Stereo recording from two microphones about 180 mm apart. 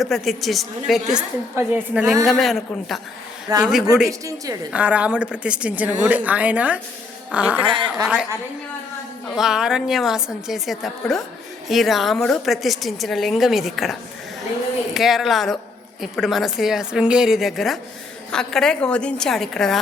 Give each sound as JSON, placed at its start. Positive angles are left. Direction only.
{"t": 0.0, "sound": "a woman's voice", "side_deg": 0}
{"t": 7.7, "sound": "a woman's voice", "side_deg": -25}
{"t": 8.0, "sound": "a woman's voice", "side_deg": -5}
{"t": 9.3, "sound": "a woman's voice", "side_deg": -5}
{"t": 14.9, "sound": "a woman's voice", "side_deg": 0}